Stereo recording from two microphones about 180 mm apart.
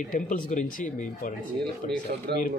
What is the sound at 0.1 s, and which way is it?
Speech, 45° left (ahead or behind).